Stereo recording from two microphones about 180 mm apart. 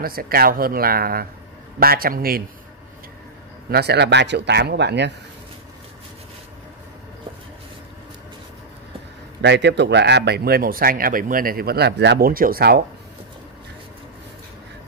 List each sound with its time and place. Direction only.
0.0 s a man's voice: 55° right (ahead or behind)
3.7 s speech: 65° right (ahead or behind)
9.4 s a man's voice: 70° right (ahead or behind)